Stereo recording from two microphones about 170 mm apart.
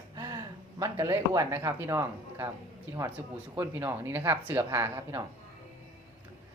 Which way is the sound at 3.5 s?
10° right (ahead or behind).